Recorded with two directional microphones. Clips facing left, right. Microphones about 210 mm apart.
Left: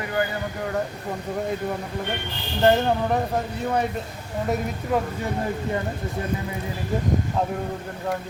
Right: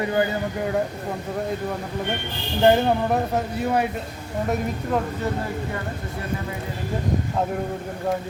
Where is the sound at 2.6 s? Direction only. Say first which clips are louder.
Right 2 dB; 10° right (ahead or behind).